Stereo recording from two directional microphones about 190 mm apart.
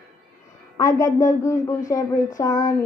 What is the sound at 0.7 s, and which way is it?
A woman's voice, 20° left (ahead or behind).